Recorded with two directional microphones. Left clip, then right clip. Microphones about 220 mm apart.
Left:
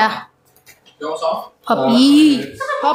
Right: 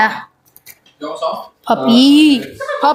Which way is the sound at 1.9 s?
25° right (ahead or behind).